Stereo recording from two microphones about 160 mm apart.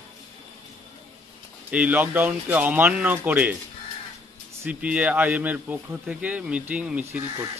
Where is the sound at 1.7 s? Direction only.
10° right (ahead or behind).